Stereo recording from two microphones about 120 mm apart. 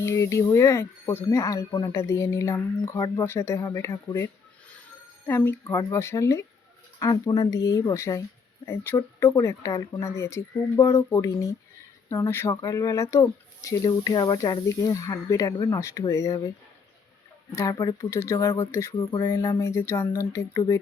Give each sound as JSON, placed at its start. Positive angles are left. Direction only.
{"t": 0.0, "sound": "speech", "side_deg": 25}
{"t": 17.5, "sound": "speech", "side_deg": 25}